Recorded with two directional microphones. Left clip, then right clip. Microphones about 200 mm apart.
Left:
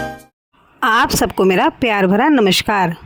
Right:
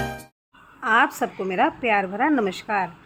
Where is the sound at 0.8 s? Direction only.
50° left (ahead or behind).